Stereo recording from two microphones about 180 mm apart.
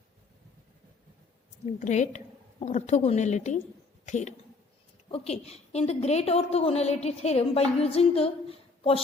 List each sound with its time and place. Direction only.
1.6 s a woman's voice: 40° left (ahead or behind)